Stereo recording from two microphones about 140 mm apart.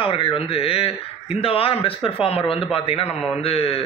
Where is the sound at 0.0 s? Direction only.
40° left (ahead or behind).